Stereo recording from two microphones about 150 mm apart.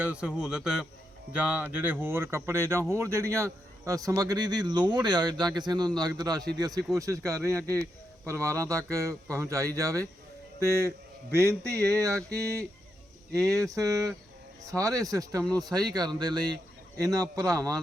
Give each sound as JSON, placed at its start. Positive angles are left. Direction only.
{"t": 0.0, "sound": "a man's voice", "side_deg": -5}
{"t": 13.7, "sound": "speech", "side_deg": -25}